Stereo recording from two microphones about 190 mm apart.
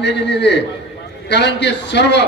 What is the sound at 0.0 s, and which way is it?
A man's voice, 65° left (ahead or behind).